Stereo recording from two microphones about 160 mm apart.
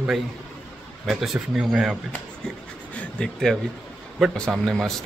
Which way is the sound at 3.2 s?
5° left (ahead or behind).